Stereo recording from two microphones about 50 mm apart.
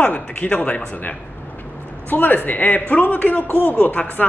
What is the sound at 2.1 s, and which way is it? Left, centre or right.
A man's voice, left.